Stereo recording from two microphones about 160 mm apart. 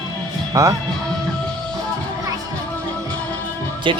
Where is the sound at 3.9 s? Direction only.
30° right (ahead or behind).